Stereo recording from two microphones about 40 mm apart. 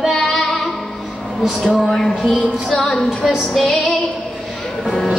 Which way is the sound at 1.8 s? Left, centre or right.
Centre.